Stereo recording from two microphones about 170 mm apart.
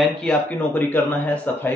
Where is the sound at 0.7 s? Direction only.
10° left (ahead or behind).